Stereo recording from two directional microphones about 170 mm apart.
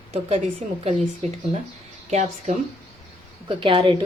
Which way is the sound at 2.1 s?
45° right (ahead or behind).